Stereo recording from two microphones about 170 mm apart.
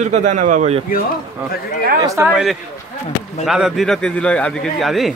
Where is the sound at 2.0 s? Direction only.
20° right (ahead or behind).